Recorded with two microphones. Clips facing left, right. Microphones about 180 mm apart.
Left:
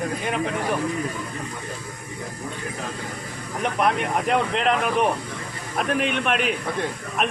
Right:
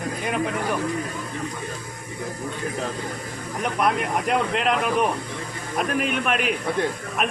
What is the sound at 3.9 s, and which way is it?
Speech, centre (ahead or behind).